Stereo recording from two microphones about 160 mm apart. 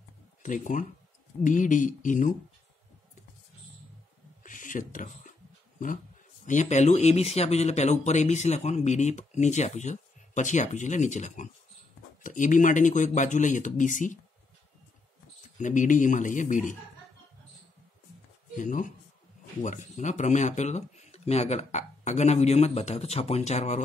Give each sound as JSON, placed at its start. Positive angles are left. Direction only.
{"t": 0.4, "sound": "speech", "side_deg": 50}
{"t": 4.4, "sound": "a sound", "side_deg": 55}
{"t": 6.4, "sound": "speech", "side_deg": 50}
{"t": 15.5, "sound": "speech", "side_deg": 50}
{"t": 18.6, "sound": "speech", "side_deg": 55}